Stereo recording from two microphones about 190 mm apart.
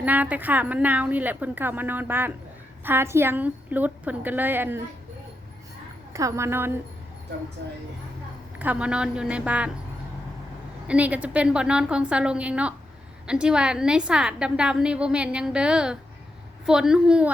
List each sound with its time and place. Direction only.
0.0 s a woman's voice: 10° right (ahead or behind)
6.1 s a woman's voice: 15° right (ahead or behind)
8.5 s a woman's voice: 10° right (ahead or behind)
10.8 s a woman's voice: 5° right (ahead or behind)